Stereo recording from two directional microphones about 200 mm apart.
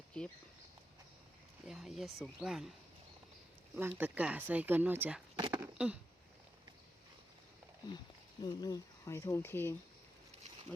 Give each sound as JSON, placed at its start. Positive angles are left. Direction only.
{"t": 0.1, "sound": "speech", "side_deg": 5}
{"t": 1.6, "sound": "speech", "side_deg": 0}
{"t": 3.8, "sound": "speech", "side_deg": -10}
{"t": 5.5, "sound": "a sound", "side_deg": -10}
{"t": 7.9, "sound": "speech", "side_deg": 20}